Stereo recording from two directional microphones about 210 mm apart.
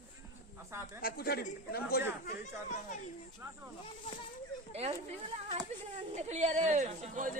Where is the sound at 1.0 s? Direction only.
45° left (ahead or behind).